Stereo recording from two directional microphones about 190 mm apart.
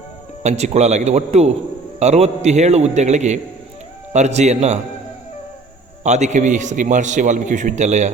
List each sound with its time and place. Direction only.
0.4 s a man's voice: 35° right (ahead or behind)
6.0 s a man's voice: 35° right (ahead or behind)